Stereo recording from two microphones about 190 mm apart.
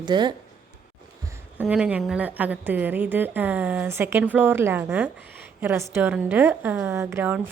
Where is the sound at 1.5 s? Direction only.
5° right (ahead or behind).